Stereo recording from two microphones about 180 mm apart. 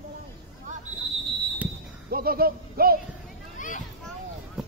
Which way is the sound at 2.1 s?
55° right (ahead or behind).